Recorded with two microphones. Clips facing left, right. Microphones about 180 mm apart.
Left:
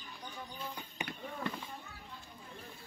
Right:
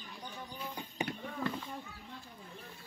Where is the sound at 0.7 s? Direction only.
30° right (ahead or behind).